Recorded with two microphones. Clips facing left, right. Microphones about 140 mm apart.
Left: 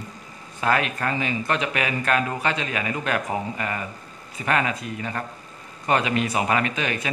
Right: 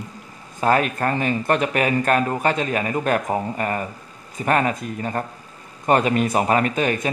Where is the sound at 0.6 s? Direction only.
40° right (ahead or behind).